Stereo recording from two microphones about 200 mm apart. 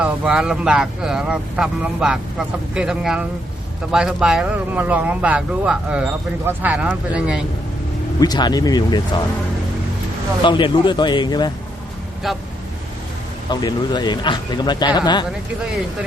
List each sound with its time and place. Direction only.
0.0 s speech: 5° right (ahead or behind)
8.2 s speech: 20° left (ahead or behind)
10.4 s speech: 25° left (ahead or behind)
13.5 s speech: 20° left (ahead or behind)